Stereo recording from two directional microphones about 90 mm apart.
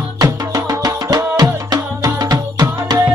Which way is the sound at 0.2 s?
45° right (ahead or behind).